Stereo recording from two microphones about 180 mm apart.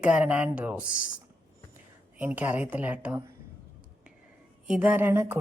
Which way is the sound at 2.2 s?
10° right (ahead or behind).